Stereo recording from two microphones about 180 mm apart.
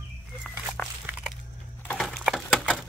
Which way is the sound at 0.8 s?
10° left (ahead or behind).